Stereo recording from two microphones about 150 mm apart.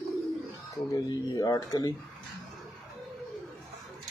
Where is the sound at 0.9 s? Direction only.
25° left (ahead or behind).